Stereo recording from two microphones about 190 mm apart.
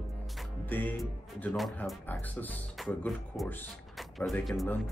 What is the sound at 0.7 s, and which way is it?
Speech, 10° left (ahead or behind).